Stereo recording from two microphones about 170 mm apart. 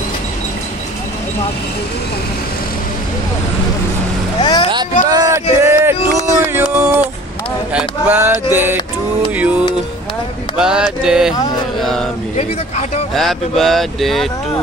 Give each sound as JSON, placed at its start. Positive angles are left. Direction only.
{"t": 4.4, "sound": "speech", "side_deg": 25}
{"t": 5.1, "sound": "a sound", "side_deg": -20}
{"t": 9.3, "sound": "music", "side_deg": -10}
{"t": 10.6, "sound": "speech", "side_deg": -5}
{"t": 12.4, "sound": "speech", "side_deg": 40}
{"t": 13.1, "sound": "speech", "side_deg": 0}